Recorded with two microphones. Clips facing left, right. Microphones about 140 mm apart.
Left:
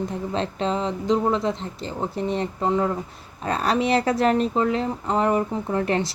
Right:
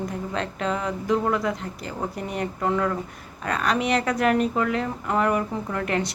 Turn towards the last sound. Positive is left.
turn(degrees=30)  # may be behind; listen again after turning